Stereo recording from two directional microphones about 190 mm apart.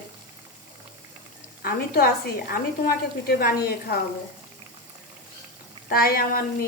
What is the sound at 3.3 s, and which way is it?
Speech, 50° left (ahead or behind).